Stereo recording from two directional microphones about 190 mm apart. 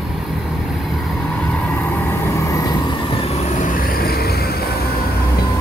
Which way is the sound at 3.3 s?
40° left (ahead or behind).